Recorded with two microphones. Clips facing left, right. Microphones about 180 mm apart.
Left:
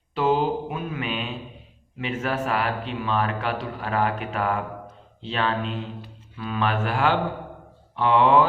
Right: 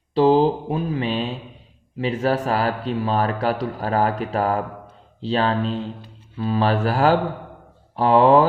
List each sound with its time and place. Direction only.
0.1 s speech: 35° right (ahead or behind)